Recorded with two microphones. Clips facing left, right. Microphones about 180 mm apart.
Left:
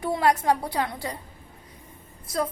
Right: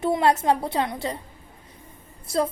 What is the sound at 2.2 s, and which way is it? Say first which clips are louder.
Speech: right 4 dB; 30° right (ahead or behind).